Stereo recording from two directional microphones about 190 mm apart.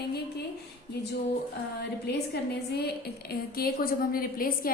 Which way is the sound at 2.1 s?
60° left (ahead or behind).